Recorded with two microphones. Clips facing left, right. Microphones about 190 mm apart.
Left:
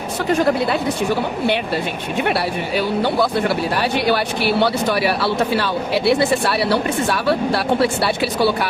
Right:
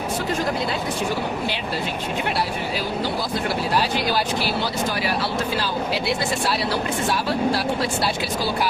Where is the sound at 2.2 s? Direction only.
65° left (ahead or behind).